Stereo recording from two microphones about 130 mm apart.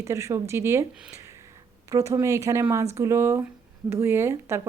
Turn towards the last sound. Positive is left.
turn(degrees=-20)  # may be behind; listen again after turning